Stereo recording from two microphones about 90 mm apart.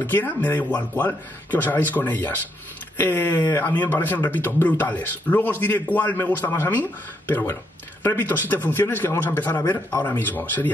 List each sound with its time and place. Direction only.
0.0 s speech: 20° left (ahead or behind)